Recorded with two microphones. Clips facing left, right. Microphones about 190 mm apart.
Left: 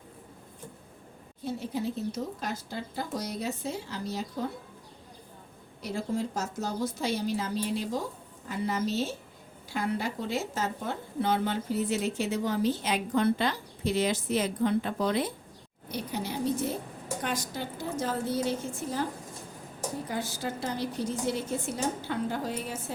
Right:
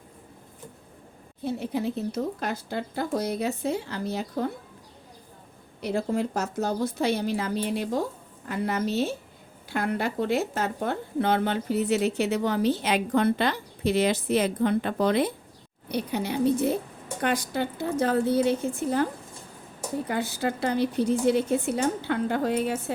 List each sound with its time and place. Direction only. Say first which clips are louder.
1.5 s speech: right 4 dB; 65° right (ahead or behind)
5.8 s speech: right 5 dB; 60° right (ahead or behind)
20.1 s speech: right 8 dB; 60° right (ahead or behind)